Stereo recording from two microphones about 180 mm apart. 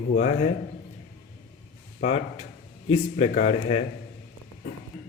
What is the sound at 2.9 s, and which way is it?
Speech, 40° left (ahead or behind).